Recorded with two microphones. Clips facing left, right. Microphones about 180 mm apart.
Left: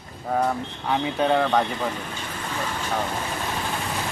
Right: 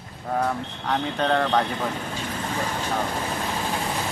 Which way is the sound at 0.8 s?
5° left (ahead or behind).